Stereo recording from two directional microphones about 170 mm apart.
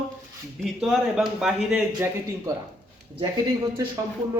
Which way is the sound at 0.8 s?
5° right (ahead or behind).